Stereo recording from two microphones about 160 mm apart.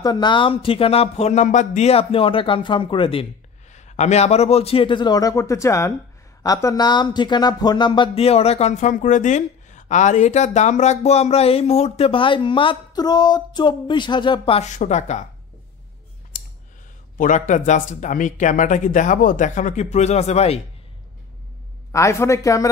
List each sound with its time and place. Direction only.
0.0 s speech: 25° left (ahead or behind)
3.7 s speech: 45° left (ahead or behind)
17.2 s speech: 50° left (ahead or behind)
21.9 s a man's voice: 20° left (ahead or behind)